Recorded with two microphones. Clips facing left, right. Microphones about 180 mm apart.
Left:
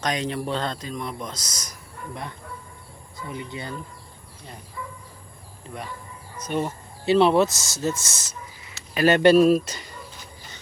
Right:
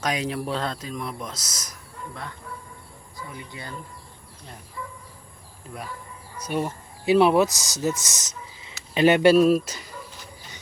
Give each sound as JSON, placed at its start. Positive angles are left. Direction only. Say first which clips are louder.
{"t": 0.0, "sound": "speech", "louder": "even", "side_deg": -5}
{"t": 3.2, "sound": "speech", "louder": "left 5 dB", "side_deg": 20}
{"t": 6.3, "sound": "speech", "louder": "left 1 dB", "side_deg": -10}
{"t": 8.6, "sound": "a sound", "louder": "right 2 dB", "side_deg": -25}
{"t": 9.1, "sound": "speech", "louder": "left 3 dB", "side_deg": -5}